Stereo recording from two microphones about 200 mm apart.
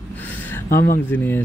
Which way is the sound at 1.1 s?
10° left (ahead or behind).